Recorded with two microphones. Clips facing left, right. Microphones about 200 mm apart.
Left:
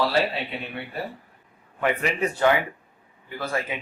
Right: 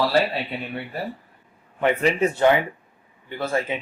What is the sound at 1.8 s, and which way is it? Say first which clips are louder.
Speech: right 4 dB; 25° right (ahead or behind).